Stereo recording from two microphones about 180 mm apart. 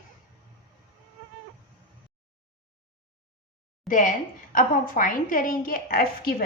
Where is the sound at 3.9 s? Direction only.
45° left (ahead or behind).